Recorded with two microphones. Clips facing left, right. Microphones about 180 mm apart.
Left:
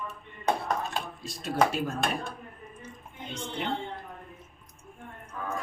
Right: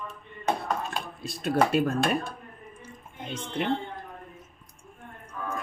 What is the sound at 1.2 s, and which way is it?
Speech, 60° right (ahead or behind).